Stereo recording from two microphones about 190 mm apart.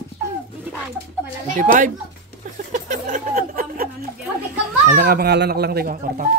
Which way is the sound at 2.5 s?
45° right (ahead or behind).